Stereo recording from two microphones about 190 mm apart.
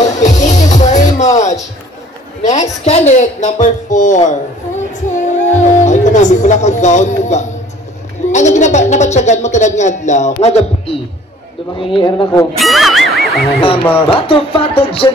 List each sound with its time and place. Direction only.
0.0 s music: 40° left (ahead or behind)
2.4 s speech: 35° left (ahead or behind)
5.1 s music: 40° left (ahead or behind)
8.3 s speech: 40° left (ahead or behind)
11.8 s music: 25° left (ahead or behind)
12.5 s music: centre (ahead or behind)
14.0 s music: 30° left (ahead or behind)